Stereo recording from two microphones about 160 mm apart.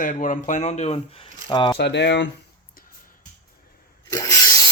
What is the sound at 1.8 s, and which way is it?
Speech, 90° left.